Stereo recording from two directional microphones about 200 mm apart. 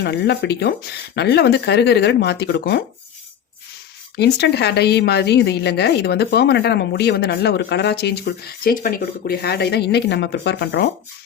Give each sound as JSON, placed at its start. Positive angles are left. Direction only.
{"t": 0.0, "sound": "a woman's voice", "side_deg": 60}
{"t": 4.2, "sound": "a woman's voice", "side_deg": 55}